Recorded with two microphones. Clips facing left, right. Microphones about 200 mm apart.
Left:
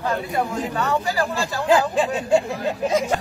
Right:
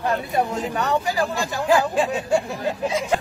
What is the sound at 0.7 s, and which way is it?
Speech, 15° right (ahead or behind).